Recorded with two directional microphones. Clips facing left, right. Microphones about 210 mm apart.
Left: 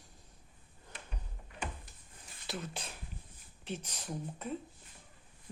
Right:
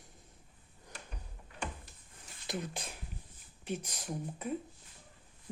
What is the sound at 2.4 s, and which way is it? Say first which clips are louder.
Speech: right 2 dB; 15° right (ahead or behind).